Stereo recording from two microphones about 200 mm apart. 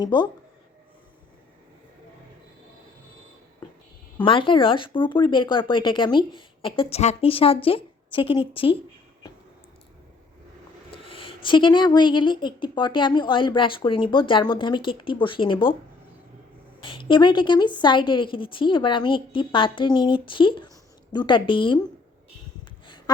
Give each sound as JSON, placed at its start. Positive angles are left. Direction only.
{"t": 0.0, "sound": "a woman's voice", "side_deg": 20}
{"t": 4.2, "sound": "a woman's voice", "side_deg": 25}
{"t": 10.9, "sound": "a woman's voice", "side_deg": 25}
{"t": 16.8, "sound": "a woman's voice", "side_deg": 25}